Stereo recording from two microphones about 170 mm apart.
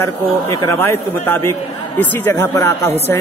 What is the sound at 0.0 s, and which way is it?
A man's voice, 15° left (ahead or behind).